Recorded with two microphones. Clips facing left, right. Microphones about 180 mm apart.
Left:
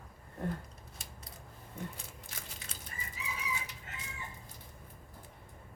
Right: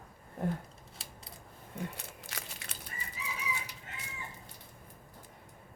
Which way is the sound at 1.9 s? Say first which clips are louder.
Right 3 dB; 70° right (ahead or behind).